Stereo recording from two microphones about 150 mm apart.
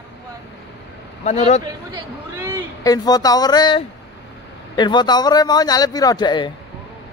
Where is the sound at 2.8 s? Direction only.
25° left (ahead or behind).